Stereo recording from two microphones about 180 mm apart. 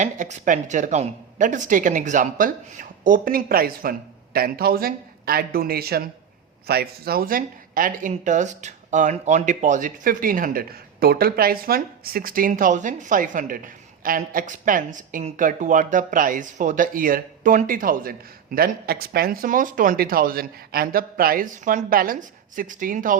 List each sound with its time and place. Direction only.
0.0 s speech: 45° right (ahead or behind)